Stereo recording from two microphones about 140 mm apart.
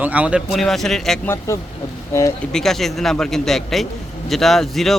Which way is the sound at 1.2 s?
20° left (ahead or behind).